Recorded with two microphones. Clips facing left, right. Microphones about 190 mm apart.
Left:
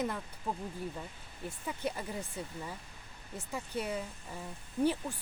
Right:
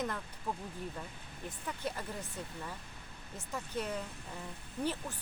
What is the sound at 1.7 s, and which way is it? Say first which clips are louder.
Speech: left 2 dB; 10° left (ahead or behind).